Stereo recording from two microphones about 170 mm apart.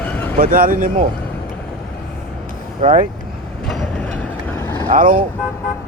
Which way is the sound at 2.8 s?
50° right (ahead or behind).